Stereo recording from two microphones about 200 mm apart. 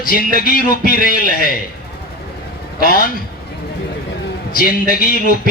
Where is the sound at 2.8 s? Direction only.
45° left (ahead or behind).